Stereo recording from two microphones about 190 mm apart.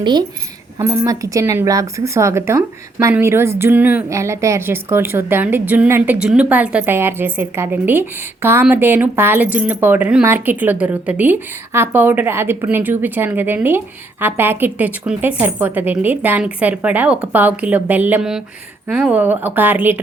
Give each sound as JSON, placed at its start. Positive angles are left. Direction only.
{"t": 0.0, "sound": "a woman's voice", "side_deg": -25}